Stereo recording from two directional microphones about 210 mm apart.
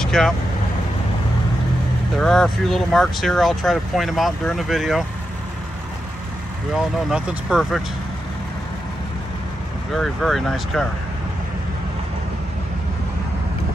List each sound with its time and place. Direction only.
0.0 s vehicle: centre (ahead or behind)
2.1 s speech: centre (ahead or behind)
6.7 s speech: 5° right (ahead or behind)
9.9 s speech: centre (ahead or behind)